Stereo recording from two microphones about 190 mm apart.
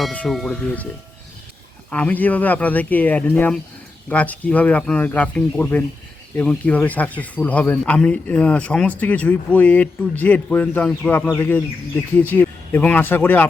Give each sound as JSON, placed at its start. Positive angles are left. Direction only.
{"t": 0.0, "sound": "speech", "side_deg": 5}
{"t": 1.9, "sound": "speech", "side_deg": 5}